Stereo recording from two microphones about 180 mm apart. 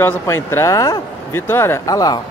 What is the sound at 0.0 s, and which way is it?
Speech, 15° left (ahead or behind).